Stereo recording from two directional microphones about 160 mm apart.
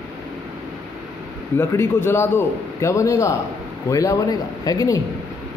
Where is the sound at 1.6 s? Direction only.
15° left (ahead or behind).